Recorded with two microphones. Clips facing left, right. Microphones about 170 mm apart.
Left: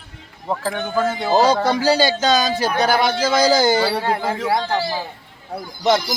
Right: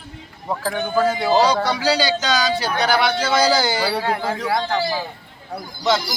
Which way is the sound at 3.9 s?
25° left (ahead or behind).